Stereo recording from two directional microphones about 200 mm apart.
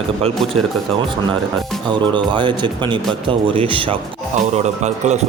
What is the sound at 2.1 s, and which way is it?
Speech, 25° right (ahead or behind).